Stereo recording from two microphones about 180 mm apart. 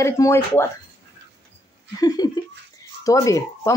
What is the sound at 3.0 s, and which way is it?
Speech, 20° left (ahead or behind).